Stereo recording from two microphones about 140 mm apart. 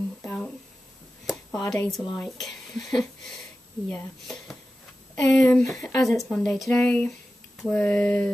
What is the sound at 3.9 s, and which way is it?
Speech, 5° left (ahead or behind).